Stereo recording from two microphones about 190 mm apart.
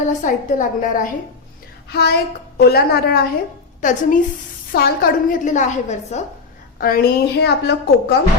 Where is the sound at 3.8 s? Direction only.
45° left (ahead or behind).